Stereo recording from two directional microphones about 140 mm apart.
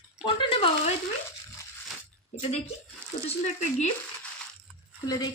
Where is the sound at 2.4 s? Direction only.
50° left (ahead or behind).